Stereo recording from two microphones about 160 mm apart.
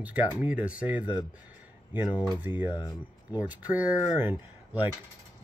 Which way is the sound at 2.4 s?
10° right (ahead or behind).